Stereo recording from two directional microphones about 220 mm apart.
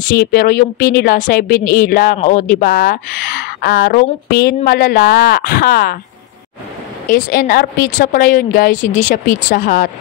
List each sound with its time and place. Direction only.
0.1 s a woman's voice: 40° left (ahead or behind)
7.1 s a woman's voice: 40° left (ahead or behind)